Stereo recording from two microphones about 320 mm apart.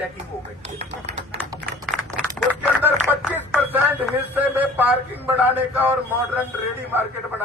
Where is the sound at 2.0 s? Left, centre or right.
Centre.